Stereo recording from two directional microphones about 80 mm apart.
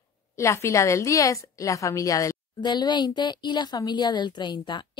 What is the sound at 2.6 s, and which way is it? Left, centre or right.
A woman's voice, left.